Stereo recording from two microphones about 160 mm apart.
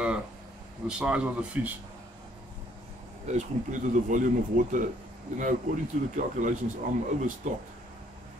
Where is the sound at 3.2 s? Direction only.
50° right (ahead or behind).